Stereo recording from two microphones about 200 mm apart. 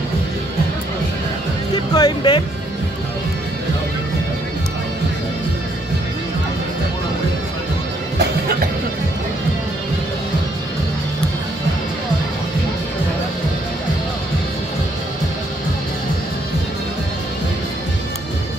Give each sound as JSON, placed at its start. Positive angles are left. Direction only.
{"t": 2.0, "sound": "music", "side_deg": 20}